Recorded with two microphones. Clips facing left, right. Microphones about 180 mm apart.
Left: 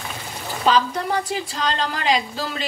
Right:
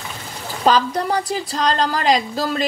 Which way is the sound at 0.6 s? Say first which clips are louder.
Right 3 dB; 40° right (ahead or behind).